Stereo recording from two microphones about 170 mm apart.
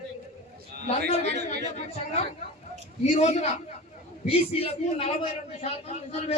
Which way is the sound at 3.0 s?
40° left (ahead or behind).